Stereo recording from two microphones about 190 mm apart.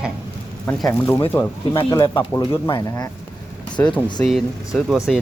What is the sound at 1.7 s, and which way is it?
Speech, 20° left (ahead or behind).